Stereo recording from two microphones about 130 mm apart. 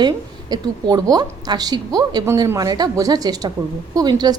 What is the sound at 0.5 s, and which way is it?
A woman's voice, 30° right (ahead or behind).